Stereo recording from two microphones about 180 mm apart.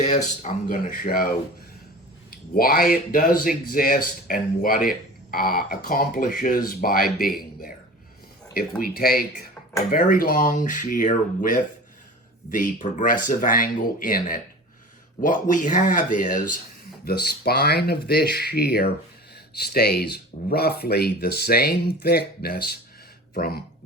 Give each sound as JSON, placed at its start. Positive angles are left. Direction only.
{"t": 0.1, "sound": "speech", "side_deg": 45}
{"t": 8.8, "sound": "speech", "side_deg": 55}
{"t": 17.1, "sound": "speech", "side_deg": 60}